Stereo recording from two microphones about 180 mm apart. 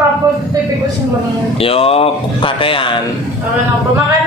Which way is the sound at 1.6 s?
30° left (ahead or behind).